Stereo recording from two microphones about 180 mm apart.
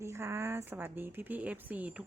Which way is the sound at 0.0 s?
15° right (ahead or behind).